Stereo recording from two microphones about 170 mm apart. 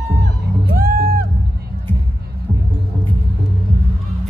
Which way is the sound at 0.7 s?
60° right (ahead or behind).